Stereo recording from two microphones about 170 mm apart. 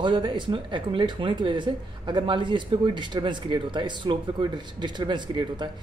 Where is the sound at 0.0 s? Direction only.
30° right (ahead or behind).